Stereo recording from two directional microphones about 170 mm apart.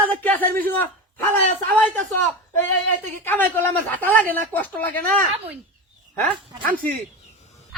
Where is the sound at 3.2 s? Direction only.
10° left (ahead or behind).